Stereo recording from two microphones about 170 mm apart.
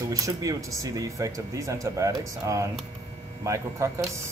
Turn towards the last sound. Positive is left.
turn(degrees=-15)  # may be behind; listen again after turning